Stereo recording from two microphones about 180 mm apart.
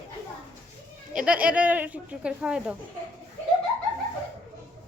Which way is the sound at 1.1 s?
5° right (ahead or behind).